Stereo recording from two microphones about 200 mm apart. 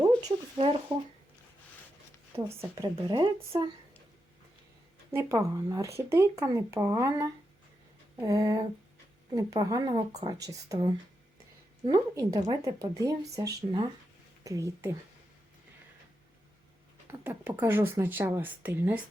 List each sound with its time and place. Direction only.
0.0 s speech: 25° right (ahead or behind)
2.3 s a woman's voice: 15° right (ahead or behind)
5.1 s speech: 15° right (ahead or behind)
17.1 s speech: 10° right (ahead or behind)